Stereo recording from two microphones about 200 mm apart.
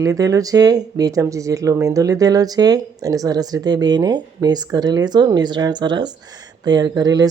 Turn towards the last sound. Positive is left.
turn(degrees=-20)  # may be behind; listen again after turning